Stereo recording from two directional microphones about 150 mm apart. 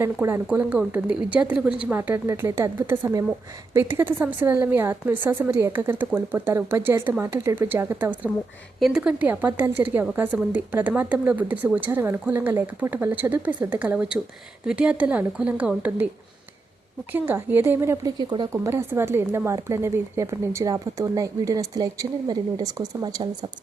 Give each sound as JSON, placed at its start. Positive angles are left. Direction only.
{"t": 0.0, "sound": "a woman's voice", "side_deg": -20}
{"t": 8.8, "sound": "a woman's voice", "side_deg": -5}
{"t": 17.1, "sound": "a woman's voice", "side_deg": -15}
{"t": 18.2, "sound": "speech", "side_deg": -30}
{"t": 18.5, "sound": "a woman's voice", "side_deg": -20}